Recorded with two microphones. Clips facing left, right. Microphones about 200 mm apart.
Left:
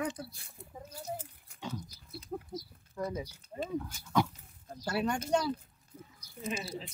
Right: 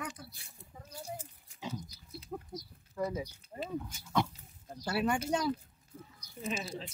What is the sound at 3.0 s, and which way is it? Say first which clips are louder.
Speech: right 1 dB; 5° right (ahead or behind).